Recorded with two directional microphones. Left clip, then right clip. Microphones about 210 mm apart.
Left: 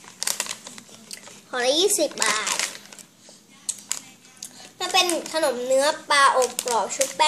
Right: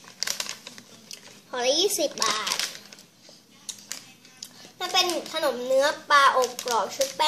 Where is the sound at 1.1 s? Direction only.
15° left (ahead or behind).